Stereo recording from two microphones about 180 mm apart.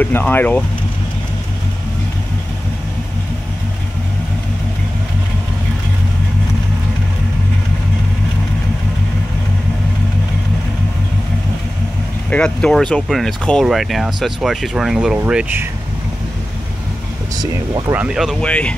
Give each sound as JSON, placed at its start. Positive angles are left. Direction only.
{"t": 0.0, "sound": "speech", "side_deg": 10}
{"t": 12.3, "sound": "speech", "side_deg": 5}
{"t": 17.4, "sound": "speech", "side_deg": -20}
{"t": 17.9, "sound": "speech", "side_deg": -5}